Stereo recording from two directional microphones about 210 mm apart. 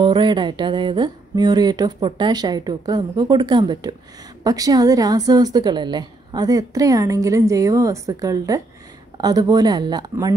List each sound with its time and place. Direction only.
0.0 s a woman's voice: 20° right (ahead or behind)